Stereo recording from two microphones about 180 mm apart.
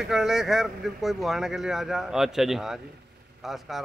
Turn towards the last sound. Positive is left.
turn(degrees=0)  # may be behind; listen again after turning